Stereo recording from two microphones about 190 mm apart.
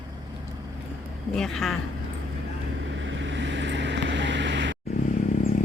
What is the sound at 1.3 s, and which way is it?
Speech, centre (ahead or behind).